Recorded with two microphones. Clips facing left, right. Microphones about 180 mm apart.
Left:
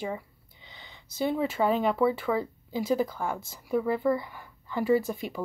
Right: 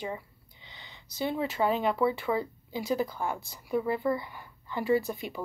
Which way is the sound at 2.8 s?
45° left (ahead or behind).